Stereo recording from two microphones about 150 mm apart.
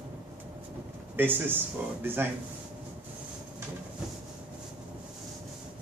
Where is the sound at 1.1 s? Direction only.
15° right (ahead or behind).